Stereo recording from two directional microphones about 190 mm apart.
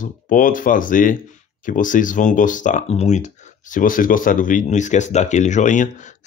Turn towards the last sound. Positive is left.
turn(degrees=40)  # may be behind; listen again after turning